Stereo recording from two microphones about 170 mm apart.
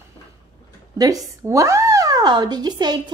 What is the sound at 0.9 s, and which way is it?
Speech, 20° right (ahead or behind).